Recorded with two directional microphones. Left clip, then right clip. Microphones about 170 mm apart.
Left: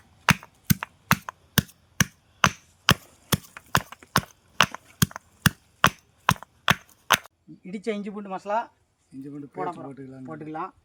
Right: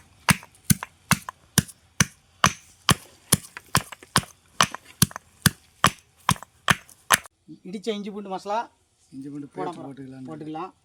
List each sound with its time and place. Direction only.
0.3 s chop: centre (ahead or behind)
3.7 s a sound: 5° left (ahead or behind)
4.9 s chop: 5° left (ahead or behind)
7.7 s speech: 10° left (ahead or behind)
9.9 s a man's voice: 25° left (ahead or behind)
10.2 s speech: 5° left (ahead or behind)